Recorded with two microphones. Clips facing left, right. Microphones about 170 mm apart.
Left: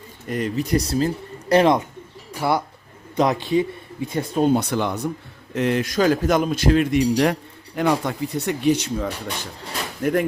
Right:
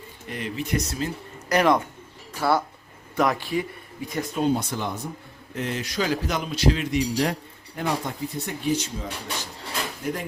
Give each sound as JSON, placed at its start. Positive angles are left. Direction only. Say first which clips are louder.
{"t": 0.3, "sound": "speech", "louder": "left 6 dB", "side_deg": 40}
{"t": 4.5, "sound": "speech", "louder": "left 6 dB", "side_deg": 70}
{"t": 5.8, "sound": "a man's voice", "louder": "left 7 dB", "side_deg": 50}
{"t": 7.8, "sound": "speech", "louder": "left 6 dB", "side_deg": 85}